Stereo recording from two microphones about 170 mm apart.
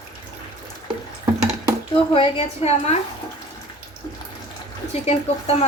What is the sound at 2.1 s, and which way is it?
Speech, 35° left (ahead or behind).